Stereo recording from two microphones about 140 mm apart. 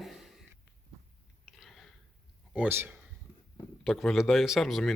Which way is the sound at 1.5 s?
Centre (ahead or behind).